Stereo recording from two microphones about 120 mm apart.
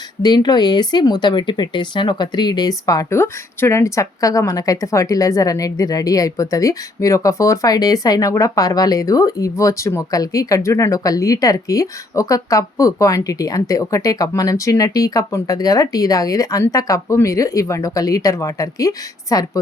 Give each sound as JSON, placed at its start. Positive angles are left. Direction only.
{"t": 0.2, "sound": "speech", "side_deg": 35}